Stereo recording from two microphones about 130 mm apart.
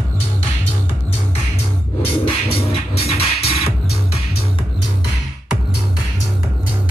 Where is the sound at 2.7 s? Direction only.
50° left (ahead or behind).